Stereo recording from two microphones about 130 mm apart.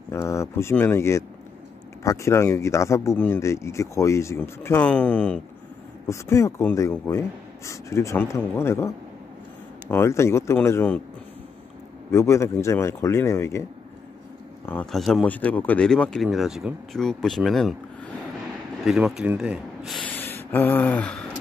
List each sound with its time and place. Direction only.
0.1 s speech: 20° left (ahead or behind)
6.0 s speech: 20° left (ahead or behind)
12.1 s speech: 20° left (ahead or behind)
14.9 s speech: centre (ahead or behind)
15.2 s speech: 10° left (ahead or behind)
18.9 s speech: 5° right (ahead or behind)
20.0 s a sound: 15° left (ahead or behind)